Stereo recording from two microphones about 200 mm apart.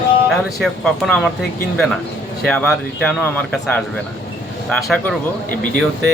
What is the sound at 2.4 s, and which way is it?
Speech, 5° left (ahead or behind).